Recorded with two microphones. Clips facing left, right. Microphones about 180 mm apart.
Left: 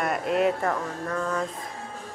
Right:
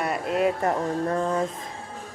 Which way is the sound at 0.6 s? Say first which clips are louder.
Right 4 dB; 30° right (ahead or behind).